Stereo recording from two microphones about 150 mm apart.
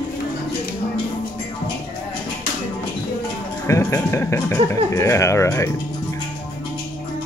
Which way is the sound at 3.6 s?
20° left (ahead or behind).